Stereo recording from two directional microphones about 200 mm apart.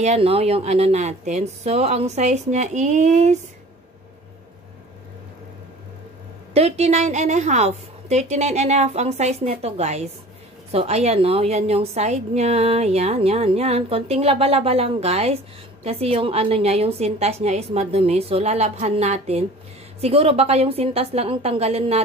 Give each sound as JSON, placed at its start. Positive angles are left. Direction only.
{"t": 0.0, "sound": "a woman's voice", "side_deg": -30}
{"t": 6.5, "sound": "a woman's voice", "side_deg": -30}